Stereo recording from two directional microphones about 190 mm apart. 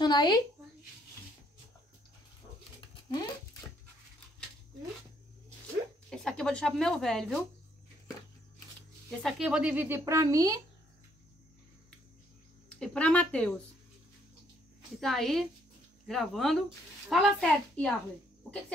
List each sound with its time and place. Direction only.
0.0 s speech: 20° left (ahead or behind)
2.8 s patter: 20° left (ahead or behind)
6.0 s speech: 5° left (ahead or behind)
9.2 s speech: 5° right (ahead or behind)
12.6 s a woman's voice: 5° left (ahead or behind)
15.0 s speech: centre (ahead or behind)